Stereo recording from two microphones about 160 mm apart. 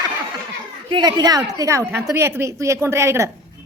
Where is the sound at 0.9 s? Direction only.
25° right (ahead or behind).